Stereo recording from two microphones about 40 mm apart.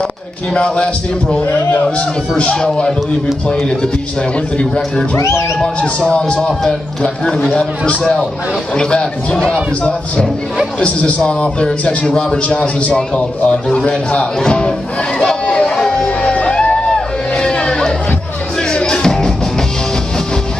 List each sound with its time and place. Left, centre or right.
1.8 s a man's voice: left
2.5 s a man's voice: centre
4.6 s a man's voice: left
10.8 s a man's voice: left
12.1 s a man's voice: centre
12.4 s a man's voice: left
12.9 s a man's voice: left
15.4 s music: left
15.7 s music: centre
16.7 s a sound: left
18.6 s music: left